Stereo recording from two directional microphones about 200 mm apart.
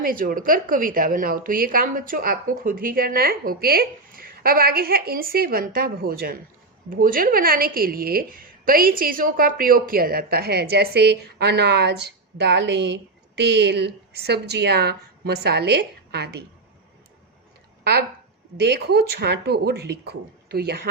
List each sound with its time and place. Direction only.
0.0 s a woman's voice: 45° right (ahead or behind)
18.6 s a woman's voice: 55° right (ahead or behind)